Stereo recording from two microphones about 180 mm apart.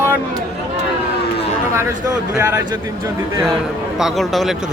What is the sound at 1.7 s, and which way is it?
Speech, 15° right (ahead or behind).